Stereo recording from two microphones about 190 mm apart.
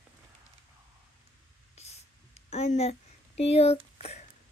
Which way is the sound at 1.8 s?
35° left (ahead or behind).